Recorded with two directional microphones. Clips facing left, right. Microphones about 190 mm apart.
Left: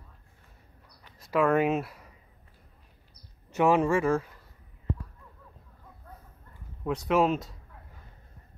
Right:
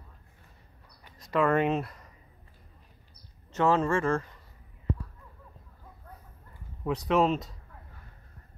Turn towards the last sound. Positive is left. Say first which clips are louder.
# even
turn(degrees=0)  # may be behind; listen again after turning